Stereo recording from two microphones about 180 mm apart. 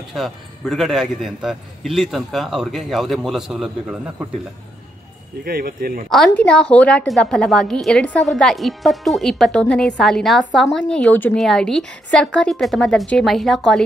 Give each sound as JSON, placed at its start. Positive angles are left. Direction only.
{"t": 0.1, "sound": "a woman's voice", "side_deg": 0}
{"t": 5.4, "sound": "speech", "side_deg": -55}
{"t": 6.0, "sound": "a woman's voice", "side_deg": 5}